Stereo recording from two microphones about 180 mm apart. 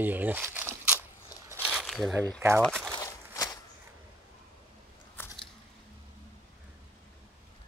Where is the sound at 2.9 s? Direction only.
20° left (ahead or behind).